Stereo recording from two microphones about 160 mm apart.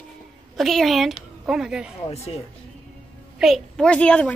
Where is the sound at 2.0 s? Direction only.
40° left (ahead or behind).